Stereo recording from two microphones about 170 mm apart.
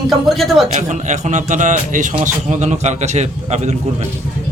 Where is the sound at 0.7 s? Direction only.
45° right (ahead or behind).